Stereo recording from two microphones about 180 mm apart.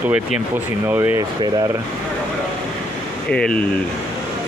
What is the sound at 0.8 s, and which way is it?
Speech, 10° right (ahead or behind).